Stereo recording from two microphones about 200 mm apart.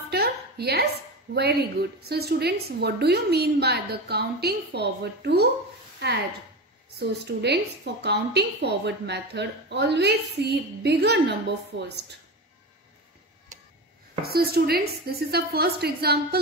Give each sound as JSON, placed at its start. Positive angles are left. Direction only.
{"t": 0.1, "sound": "a sound", "side_deg": -55}
{"t": 1.3, "sound": "a woman's voice", "side_deg": -55}
{"t": 7.0, "sound": "a woman's voice", "side_deg": -55}
{"t": 14.2, "sound": "a woman's voice", "side_deg": -50}